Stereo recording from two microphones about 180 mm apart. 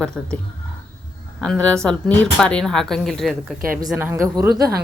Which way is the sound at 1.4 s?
5° left (ahead or behind).